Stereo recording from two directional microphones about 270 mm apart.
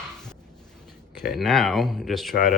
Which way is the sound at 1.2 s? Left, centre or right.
Centre.